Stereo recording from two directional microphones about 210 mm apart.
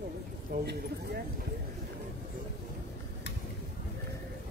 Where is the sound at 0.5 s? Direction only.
45° right (ahead or behind).